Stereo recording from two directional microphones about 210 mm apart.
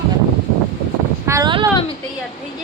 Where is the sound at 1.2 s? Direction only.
15° right (ahead or behind).